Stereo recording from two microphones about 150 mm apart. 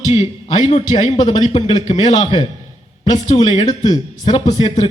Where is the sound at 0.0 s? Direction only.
40° left (ahead or behind).